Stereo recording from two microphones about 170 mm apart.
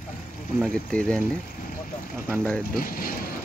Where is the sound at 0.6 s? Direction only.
5° left (ahead or behind).